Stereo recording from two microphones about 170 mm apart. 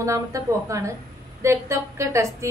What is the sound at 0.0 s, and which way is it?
A woman's voice, 20° right (ahead or behind).